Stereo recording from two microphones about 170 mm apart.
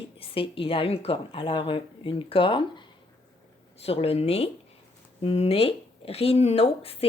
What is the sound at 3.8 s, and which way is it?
Speech, 35° left (ahead or behind).